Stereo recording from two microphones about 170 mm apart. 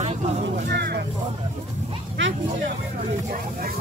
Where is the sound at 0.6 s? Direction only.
75° right (ahead or behind).